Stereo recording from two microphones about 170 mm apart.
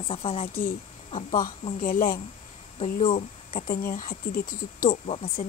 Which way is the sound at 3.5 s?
50° left (ahead or behind).